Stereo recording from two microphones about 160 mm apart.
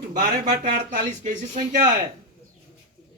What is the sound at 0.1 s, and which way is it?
Speech, 60° right (ahead or behind).